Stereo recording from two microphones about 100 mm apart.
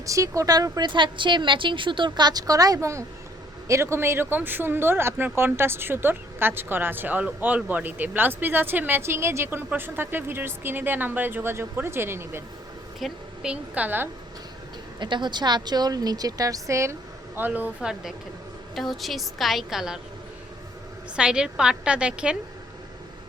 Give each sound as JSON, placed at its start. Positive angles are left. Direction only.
{"t": 0.0, "sound": "a woman's voice", "side_deg": -30}
{"t": 13.0, "sound": "a woman's voice", "side_deg": -5}
{"t": 14.9, "sound": "a woman's voice", "side_deg": -50}
{"t": 17.3, "sound": "a woman's voice", "side_deg": -20}
{"t": 21.2, "sound": "a woman's voice", "side_deg": -10}